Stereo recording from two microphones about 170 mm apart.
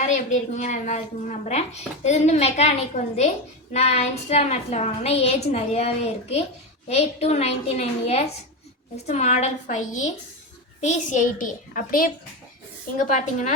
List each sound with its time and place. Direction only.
0.0 s a woman's voice: 45° left (ahead or behind)
13.1 s a child's voice: 45° left (ahead or behind)